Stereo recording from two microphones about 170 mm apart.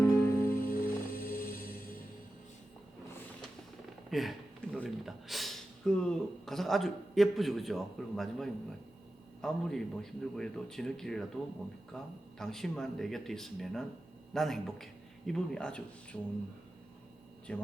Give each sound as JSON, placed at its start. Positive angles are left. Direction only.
{"t": 0.0, "sound": "music", "side_deg": 10}
{"t": 0.7, "sound": "music", "side_deg": 60}
{"t": 4.1, "sound": "speech", "side_deg": 0}
{"t": 17.5, "sound": "speech", "side_deg": 5}